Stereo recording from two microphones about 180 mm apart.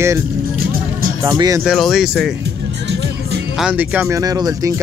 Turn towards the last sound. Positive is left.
turn(degrees=-20)  # may be behind; listen again after turning